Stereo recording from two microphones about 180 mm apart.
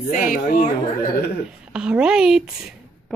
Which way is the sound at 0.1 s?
50° left (ahead or behind).